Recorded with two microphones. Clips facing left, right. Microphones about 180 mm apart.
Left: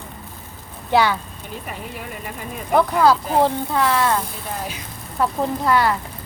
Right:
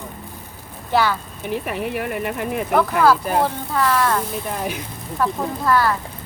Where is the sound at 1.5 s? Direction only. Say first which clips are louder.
Right 9 dB; 70° right (ahead or behind).